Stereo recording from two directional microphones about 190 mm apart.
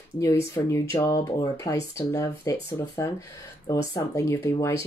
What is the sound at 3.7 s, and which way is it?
Speech, 15° left (ahead or behind).